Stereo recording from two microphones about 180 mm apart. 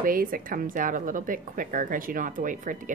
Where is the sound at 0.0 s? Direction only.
50° right (ahead or behind).